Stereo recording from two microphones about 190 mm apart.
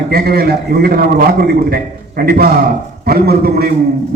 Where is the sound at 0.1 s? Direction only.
55° right (ahead or behind).